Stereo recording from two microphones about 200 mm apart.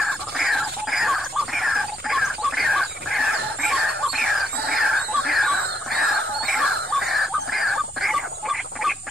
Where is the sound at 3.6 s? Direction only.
Centre (ahead or behind).